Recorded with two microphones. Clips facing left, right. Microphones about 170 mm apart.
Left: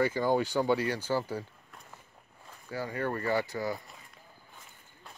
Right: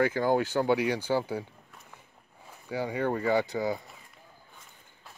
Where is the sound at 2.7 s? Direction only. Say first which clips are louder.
Right 4 dB; 20° right (ahead or behind).